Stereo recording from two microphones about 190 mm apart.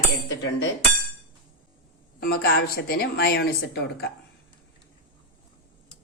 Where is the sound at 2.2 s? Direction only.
55° left (ahead or behind).